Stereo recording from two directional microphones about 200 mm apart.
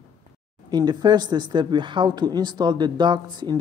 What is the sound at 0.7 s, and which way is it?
Speech, 20° right (ahead or behind).